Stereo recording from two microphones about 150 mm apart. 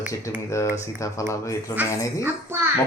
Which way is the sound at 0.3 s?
20° left (ahead or behind).